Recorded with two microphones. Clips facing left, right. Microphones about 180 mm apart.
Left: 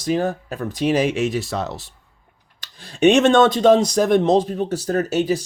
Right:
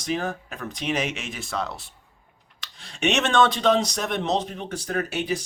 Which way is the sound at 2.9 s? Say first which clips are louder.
Left 8 dB; 40° left (ahead or behind).